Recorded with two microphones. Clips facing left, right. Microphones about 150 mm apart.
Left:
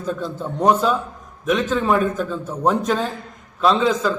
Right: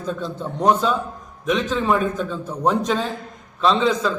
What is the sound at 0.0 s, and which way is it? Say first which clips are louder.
A man's voice: left 1 dB; 5° left (ahead or behind).